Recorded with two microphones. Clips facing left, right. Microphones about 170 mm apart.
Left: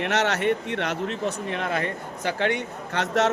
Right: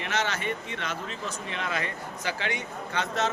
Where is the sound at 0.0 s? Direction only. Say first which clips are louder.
Left 7 dB; 70° left (ahead or behind).